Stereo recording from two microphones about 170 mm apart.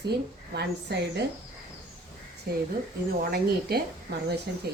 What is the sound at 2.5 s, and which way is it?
A woman's voice, 65° right (ahead or behind).